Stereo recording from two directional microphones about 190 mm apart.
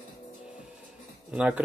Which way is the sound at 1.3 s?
5° right (ahead or behind).